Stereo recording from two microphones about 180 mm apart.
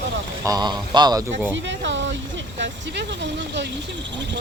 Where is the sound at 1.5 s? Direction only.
90° right.